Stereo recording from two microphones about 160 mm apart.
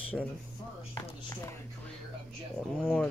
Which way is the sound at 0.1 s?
5° left (ahead or behind).